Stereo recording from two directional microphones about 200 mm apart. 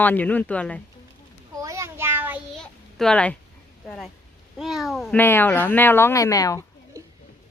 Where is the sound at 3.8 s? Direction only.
5° left (ahead or behind).